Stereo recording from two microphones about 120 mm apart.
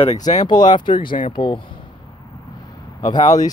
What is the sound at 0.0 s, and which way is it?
Speech, 75° left (ahead or behind).